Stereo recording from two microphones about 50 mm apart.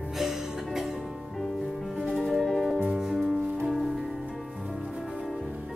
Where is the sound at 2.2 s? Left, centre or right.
Centre.